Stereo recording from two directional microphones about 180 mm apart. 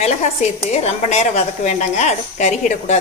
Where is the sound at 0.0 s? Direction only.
35° left (ahead or behind).